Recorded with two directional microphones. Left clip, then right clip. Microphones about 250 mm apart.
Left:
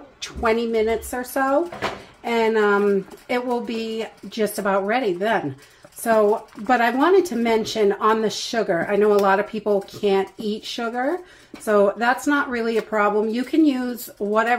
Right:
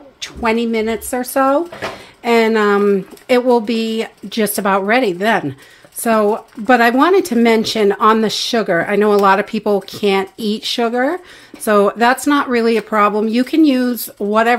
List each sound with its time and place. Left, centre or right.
0.2 s speech: right
6.7 s speech: right